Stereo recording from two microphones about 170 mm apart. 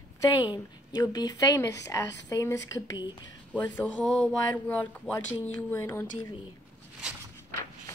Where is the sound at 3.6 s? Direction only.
10° left (ahead or behind).